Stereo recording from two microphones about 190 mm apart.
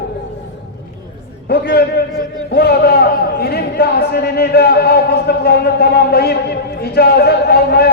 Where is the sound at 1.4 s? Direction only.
60° left (ahead or behind).